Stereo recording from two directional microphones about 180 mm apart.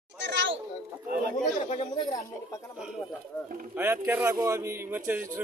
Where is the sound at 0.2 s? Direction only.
75° right (ahead or behind).